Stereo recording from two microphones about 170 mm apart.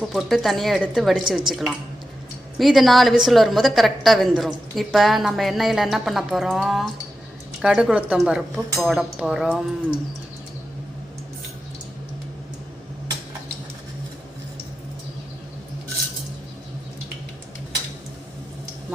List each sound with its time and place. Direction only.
0.0 s a woman's voice: centre (ahead or behind)